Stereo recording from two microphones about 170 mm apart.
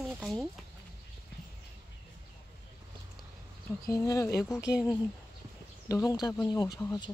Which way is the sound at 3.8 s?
20° left (ahead or behind).